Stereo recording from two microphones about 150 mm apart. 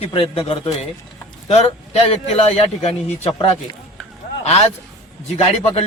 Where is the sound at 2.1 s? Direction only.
45° left (ahead or behind).